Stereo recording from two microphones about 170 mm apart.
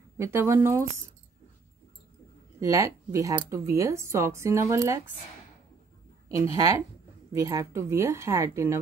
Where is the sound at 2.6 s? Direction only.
20° right (ahead or behind).